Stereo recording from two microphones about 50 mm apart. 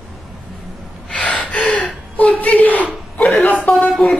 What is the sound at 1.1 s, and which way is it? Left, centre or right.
Gasp, left.